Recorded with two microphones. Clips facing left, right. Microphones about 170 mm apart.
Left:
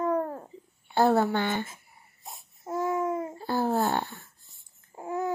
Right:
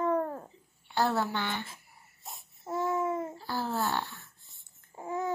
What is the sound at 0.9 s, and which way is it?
Speech, 50° left (ahead or behind).